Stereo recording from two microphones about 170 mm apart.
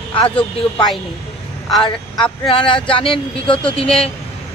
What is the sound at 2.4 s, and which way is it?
Speech, 30° left (ahead or behind).